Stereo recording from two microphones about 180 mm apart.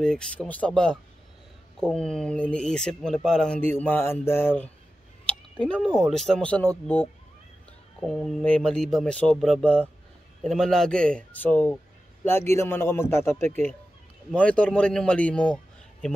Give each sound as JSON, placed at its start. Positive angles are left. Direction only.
{"t": 0.0, "sound": "a man's voice", "side_deg": 5}
{"t": 8.0, "sound": "a man's voice", "side_deg": 0}